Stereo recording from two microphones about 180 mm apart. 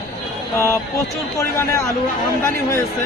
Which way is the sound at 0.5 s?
15° left (ahead or behind).